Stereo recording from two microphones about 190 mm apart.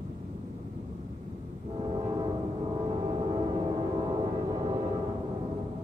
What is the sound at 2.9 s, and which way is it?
Music, 25° right (ahead or behind).